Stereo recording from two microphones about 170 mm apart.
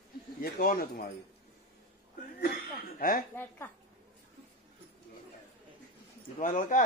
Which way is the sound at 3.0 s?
55° left (ahead or behind).